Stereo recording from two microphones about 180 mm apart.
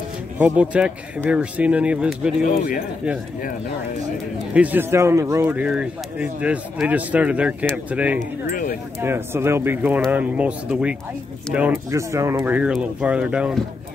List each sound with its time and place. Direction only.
0.4 s speech: 5° right (ahead or behind)
2.4 s speech: 50° left (ahead or behind)
4.6 s speech: 10° right (ahead or behind)
8.5 s speech: 50° left (ahead or behind)
9.0 s speech: 15° right (ahead or behind)